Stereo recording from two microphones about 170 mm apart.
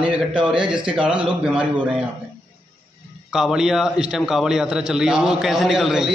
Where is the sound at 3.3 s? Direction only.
5° right (ahead or behind).